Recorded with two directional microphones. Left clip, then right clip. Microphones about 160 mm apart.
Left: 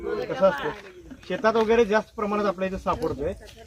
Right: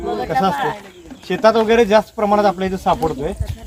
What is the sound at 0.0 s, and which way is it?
Speech, 25° right (ahead or behind).